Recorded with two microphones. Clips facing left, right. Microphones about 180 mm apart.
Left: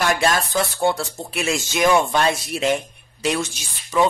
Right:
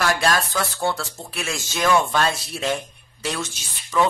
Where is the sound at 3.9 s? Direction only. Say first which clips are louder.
Left 2 dB; 20° left (ahead or behind).